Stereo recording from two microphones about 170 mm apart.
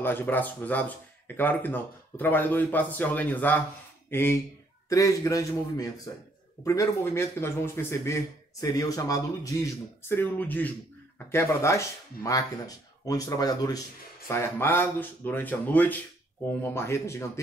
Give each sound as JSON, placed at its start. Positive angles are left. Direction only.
{"t": 0.0, "sound": "a man's voice", "side_deg": 10}